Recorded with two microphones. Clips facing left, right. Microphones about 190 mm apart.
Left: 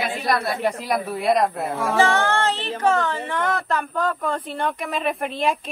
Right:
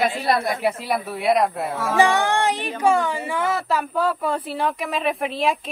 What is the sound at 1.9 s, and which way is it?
Speech, 15° right (ahead or behind).